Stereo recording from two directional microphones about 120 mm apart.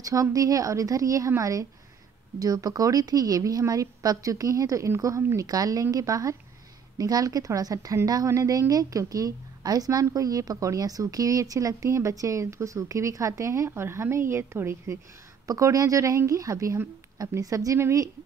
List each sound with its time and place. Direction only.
0.0 s a woman's voice: 30° right (ahead or behind)